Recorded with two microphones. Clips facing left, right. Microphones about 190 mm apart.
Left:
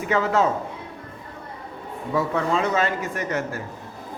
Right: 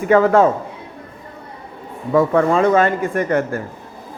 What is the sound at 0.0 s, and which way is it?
Speech, 50° right (ahead or behind).